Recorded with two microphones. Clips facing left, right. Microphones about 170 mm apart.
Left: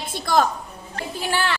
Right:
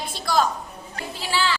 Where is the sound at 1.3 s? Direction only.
55° left (ahead or behind).